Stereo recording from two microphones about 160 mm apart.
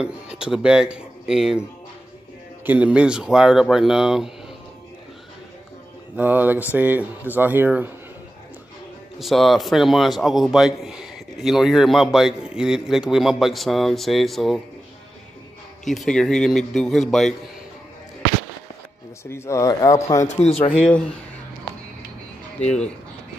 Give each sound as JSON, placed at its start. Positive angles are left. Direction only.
{"t": 0.0, "sound": "a man's voice", "side_deg": -5}
{"t": 2.6, "sound": "a man's voice", "side_deg": -10}
{"t": 6.1, "sound": "speech", "side_deg": -10}
{"t": 9.2, "sound": "a man's voice", "side_deg": 0}
{"t": 15.8, "sound": "a man's voice", "side_deg": 0}
{"t": 19.2, "sound": "speech", "side_deg": 15}
{"t": 20.2, "sound": "speech", "side_deg": 45}